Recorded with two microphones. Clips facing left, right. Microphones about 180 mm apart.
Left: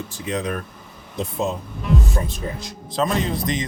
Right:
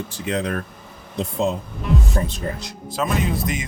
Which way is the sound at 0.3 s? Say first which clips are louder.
Right 1 dB; 60° right (ahead or behind).